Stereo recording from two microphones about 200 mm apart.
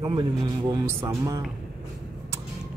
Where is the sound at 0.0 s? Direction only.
20° right (ahead or behind).